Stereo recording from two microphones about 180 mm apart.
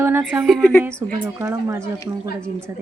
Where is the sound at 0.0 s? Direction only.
10° right (ahead or behind); by 1.3 s 5° left (ahead or behind).